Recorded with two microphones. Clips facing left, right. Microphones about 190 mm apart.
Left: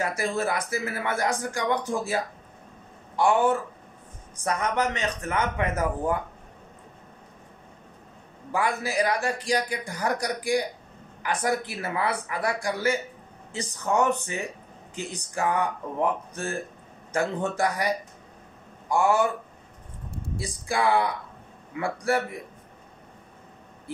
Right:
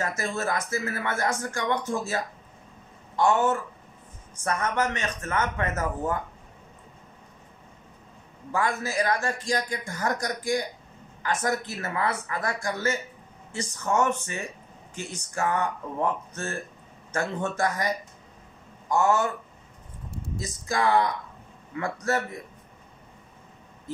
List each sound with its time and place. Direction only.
0.2 s a man's voice: 15° left (ahead or behind)
8.5 s a man's voice: 15° left (ahead or behind)
20.3 s a man's voice: 10° left (ahead or behind)